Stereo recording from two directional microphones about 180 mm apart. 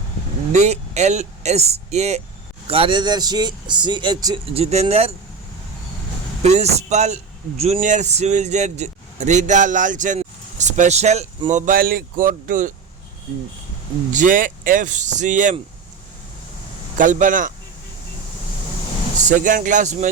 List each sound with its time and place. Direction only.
0.5 s a man's voice: 40° right (ahead or behind); by 4.5 s 25° right (ahead or behind)
4.5 s a man's voice: 35° right (ahead or behind)
6.4 s a man's voice: 35° right (ahead or behind)
14.1 s speech: 45° right (ahead or behind)
17.0 s speech: 45° right (ahead or behind)
19.2 s speech: 45° right (ahead or behind)